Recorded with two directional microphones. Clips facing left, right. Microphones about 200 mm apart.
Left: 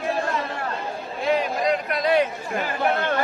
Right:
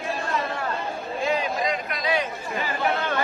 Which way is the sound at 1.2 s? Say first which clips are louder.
Left 4 dB; 60° left (ahead or behind).